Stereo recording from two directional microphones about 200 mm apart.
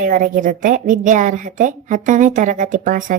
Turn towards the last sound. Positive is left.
turn(degrees=-40)  # may be behind; listen again after turning